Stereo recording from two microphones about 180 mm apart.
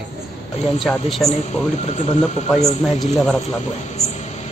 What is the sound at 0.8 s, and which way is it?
Speech, centre (ahead or behind).